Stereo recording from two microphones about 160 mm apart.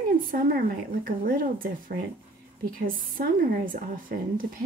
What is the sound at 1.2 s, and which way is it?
Speech, 60° right (ahead or behind).